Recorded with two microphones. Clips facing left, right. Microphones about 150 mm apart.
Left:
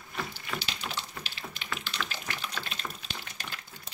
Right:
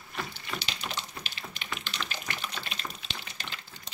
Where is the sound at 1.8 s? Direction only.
15° right (ahead or behind).